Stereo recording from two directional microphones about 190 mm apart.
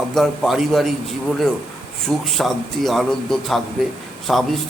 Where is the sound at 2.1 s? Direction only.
Centre (ahead or behind).